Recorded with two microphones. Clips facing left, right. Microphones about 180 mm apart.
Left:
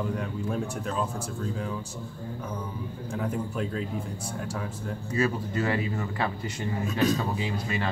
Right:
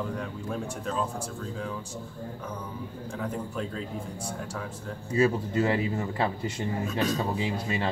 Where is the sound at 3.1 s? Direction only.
5° left (ahead or behind).